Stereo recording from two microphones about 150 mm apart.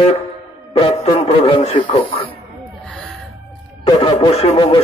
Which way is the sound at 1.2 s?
40° left (ahead or behind).